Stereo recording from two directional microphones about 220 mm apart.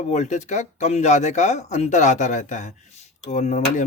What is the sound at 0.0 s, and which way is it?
Speech, 30° left (ahead or behind).